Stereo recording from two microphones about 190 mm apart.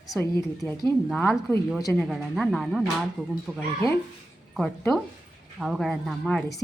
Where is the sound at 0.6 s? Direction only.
15° right (ahead or behind).